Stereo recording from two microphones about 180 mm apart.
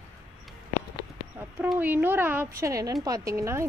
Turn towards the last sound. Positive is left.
turn(degrees=-15)  # may be behind; listen again after turning